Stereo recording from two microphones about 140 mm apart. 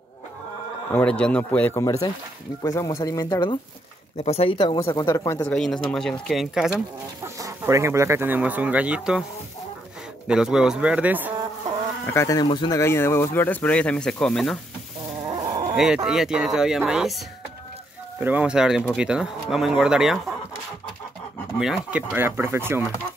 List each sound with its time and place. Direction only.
0.9 s speech: 10° left (ahead or behind)
1.8 s speech: 25° left (ahead or behind)
4.2 s speech: 45° left (ahead or behind)
4.7 s speech: 25° left (ahead or behind)
5.4 s speech: 5° left (ahead or behind)
7.3 s speech: 25° right (ahead or behind); by 9.2 s 5° right (ahead or behind)
10.2 s speech: 5° right (ahead or behind)
12.1 s speech: 20° left (ahead or behind)
12.8 s speech: 20° left (ahead or behind)
15.2 s livestock: 30° right (ahead or behind)
15.7 s speech: 5° right (ahead or behind)
18.2 s speech: 10° right (ahead or behind)
21.5 s speech: 5° right (ahead or behind)
22.1 s speech: 15° right (ahead or behind)